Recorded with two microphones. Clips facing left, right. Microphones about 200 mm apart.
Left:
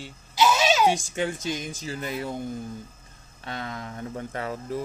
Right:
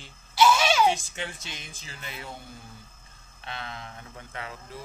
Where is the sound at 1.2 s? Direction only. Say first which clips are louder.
Left 10 dB; 40° left (ahead or behind).